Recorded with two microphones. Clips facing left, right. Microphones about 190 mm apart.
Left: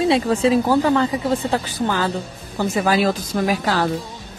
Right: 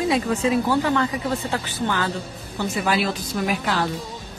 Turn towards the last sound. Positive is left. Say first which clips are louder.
# left 4 dB
turn(degrees=40)  # may be behind; listen again after turning